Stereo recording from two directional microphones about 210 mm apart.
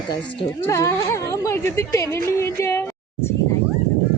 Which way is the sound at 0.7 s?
15° left (ahead or behind).